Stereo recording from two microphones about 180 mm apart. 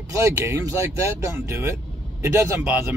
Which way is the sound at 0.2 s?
15° right (ahead or behind).